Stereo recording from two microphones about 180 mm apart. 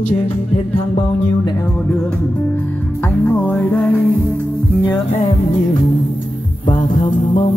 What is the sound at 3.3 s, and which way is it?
Music, 5° left (ahead or behind).